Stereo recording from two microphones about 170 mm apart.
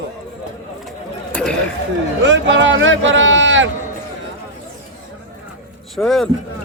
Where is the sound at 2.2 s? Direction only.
90° right.